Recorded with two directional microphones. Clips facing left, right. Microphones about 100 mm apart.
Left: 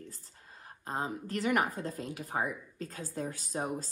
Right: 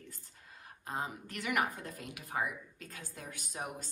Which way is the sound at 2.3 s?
40° left (ahead or behind).